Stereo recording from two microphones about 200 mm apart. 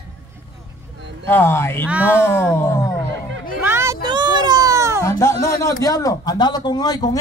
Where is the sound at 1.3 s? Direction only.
10° left (ahead or behind).